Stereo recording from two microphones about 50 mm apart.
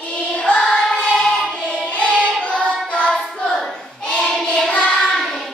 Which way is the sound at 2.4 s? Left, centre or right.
Left.